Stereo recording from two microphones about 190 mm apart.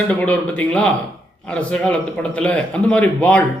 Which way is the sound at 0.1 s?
10° left (ahead or behind).